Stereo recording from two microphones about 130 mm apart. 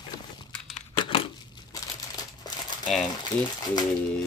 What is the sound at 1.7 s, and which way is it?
Crumpling, 30° left (ahead or behind).